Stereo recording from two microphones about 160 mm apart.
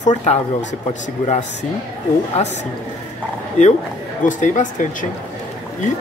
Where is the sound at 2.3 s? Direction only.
45° left (ahead or behind).